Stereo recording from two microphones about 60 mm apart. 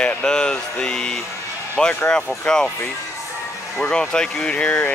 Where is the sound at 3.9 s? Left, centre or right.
Centre.